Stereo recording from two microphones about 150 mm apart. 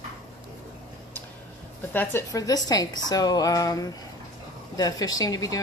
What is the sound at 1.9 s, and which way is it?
Speech, 15° left (ahead or behind).